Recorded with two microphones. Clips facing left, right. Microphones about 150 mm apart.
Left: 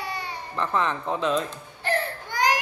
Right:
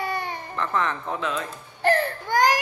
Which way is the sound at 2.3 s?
45° right (ahead or behind).